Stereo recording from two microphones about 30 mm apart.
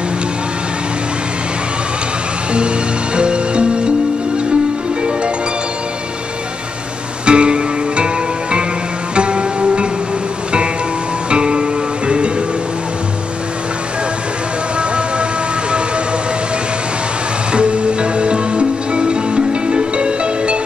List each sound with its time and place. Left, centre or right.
3.2 s music: right
7.2 s music: right
11.2 s music: right
17.5 s music: right